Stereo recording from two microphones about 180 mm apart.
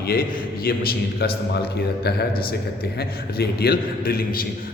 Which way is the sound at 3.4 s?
60° left (ahead or behind).